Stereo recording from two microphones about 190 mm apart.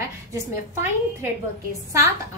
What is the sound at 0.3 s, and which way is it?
A woman's voice, 15° right (ahead or behind).